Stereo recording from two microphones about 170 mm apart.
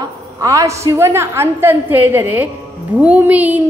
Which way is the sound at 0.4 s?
20° right (ahead or behind).